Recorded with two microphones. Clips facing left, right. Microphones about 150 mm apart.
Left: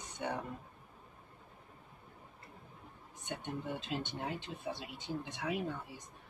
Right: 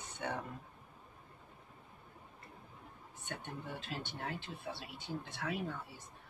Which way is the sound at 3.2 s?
20° left (ahead or behind).